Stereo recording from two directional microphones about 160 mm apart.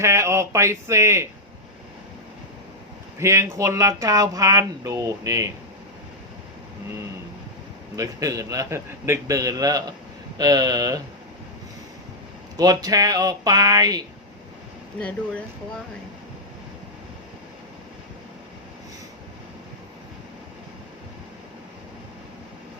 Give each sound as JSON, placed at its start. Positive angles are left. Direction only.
{"t": 0.0, "sound": "speech", "side_deg": -15}
{"t": 3.2, "sound": "speech", "side_deg": -20}
{"t": 7.9, "sound": "speech", "side_deg": -20}
{"t": 12.5, "sound": "speech", "side_deg": -20}
{"t": 15.0, "sound": "speech", "side_deg": 5}